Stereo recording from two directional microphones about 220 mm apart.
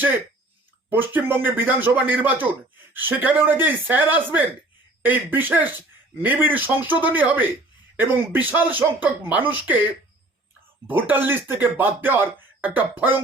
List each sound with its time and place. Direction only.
0.9 s speech: 10° right (ahead or behind)
10.8 s speech: 10° right (ahead or behind)